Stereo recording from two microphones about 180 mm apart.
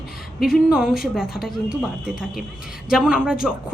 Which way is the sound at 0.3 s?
Centre (ahead or behind).